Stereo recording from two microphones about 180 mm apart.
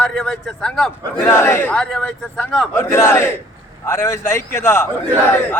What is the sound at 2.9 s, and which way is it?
A man's voice, 15° left (ahead or behind).